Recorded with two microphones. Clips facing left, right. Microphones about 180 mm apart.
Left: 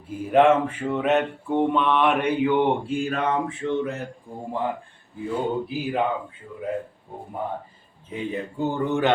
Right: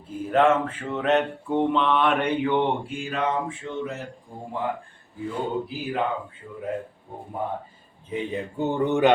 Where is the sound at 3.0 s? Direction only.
50° left (ahead or behind).